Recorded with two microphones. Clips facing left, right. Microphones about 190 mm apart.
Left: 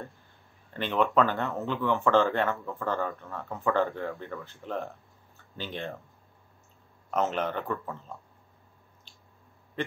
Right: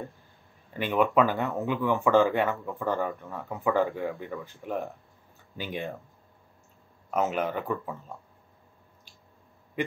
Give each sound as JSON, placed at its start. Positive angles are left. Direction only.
{"t": 0.7, "sound": "speech", "side_deg": -10}
{"t": 7.1, "sound": "speech", "side_deg": -5}